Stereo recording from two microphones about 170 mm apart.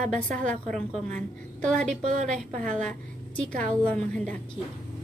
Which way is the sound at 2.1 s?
50° right (ahead or behind).